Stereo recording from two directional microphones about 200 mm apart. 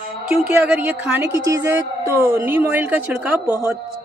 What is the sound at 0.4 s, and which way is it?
A woman's voice, 10° right (ahead or behind).